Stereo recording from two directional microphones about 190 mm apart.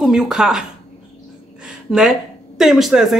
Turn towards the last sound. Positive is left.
turn(degrees=0)  # may be behind; listen again after turning